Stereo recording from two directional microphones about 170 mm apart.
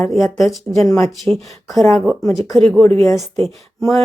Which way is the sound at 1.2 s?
Centre (ahead or behind).